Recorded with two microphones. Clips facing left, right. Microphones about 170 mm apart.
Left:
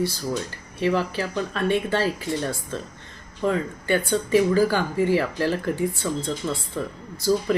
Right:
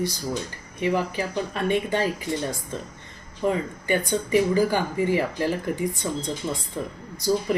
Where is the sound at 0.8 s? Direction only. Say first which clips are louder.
Left 1 dB; 15° right (ahead or behind).